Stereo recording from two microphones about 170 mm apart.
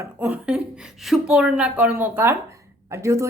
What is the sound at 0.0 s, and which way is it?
Speech, 10° right (ahead or behind).